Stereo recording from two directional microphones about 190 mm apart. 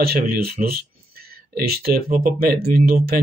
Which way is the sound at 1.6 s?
55° right (ahead or behind).